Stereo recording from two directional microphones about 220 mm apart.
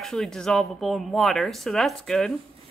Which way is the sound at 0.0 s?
Centre (ahead or behind).